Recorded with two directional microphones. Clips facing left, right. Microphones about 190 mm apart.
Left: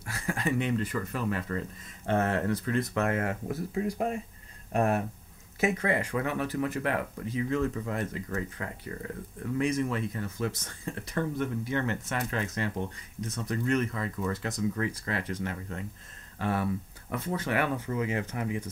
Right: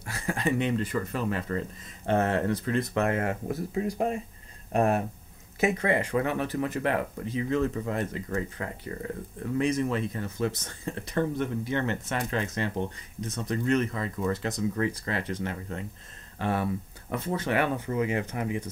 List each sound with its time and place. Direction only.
0.0 s speech: 25° right (ahead or behind)